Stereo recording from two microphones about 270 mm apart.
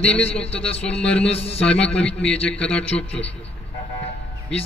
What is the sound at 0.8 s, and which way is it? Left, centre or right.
Speech, centre.